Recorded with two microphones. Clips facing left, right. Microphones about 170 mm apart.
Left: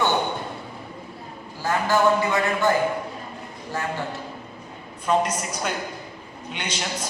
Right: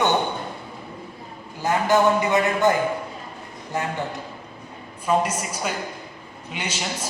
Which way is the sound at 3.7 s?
20° right (ahead or behind).